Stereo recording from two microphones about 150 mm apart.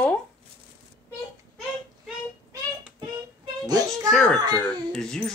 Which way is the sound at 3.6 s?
25° right (ahead or behind).